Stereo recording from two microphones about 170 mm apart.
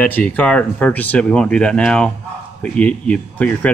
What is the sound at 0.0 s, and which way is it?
Speech, 10° left (ahead or behind).